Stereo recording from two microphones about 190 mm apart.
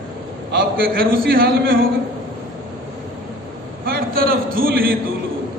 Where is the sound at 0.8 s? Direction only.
50° right (ahead or behind).